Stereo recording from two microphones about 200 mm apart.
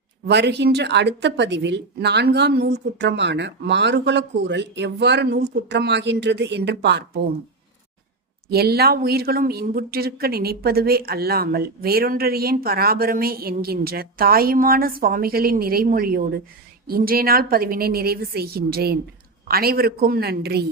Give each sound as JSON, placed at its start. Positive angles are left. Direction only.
{"t": 0.3, "sound": "a woman's voice", "side_deg": -55}
{"t": 8.4, "sound": "speech", "side_deg": -50}